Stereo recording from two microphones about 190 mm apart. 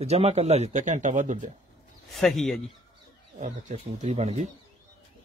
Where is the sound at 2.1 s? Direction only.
Centre (ahead or behind).